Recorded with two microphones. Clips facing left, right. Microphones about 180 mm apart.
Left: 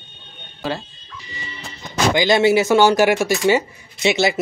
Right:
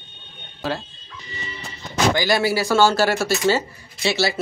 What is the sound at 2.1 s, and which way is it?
Speech, 20° left (ahead or behind).